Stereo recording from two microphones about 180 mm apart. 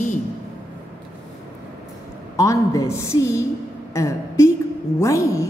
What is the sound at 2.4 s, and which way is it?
A woman's voice, 20° left (ahead or behind).